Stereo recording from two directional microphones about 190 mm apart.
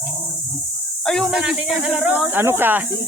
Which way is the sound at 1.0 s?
5° left (ahead or behind).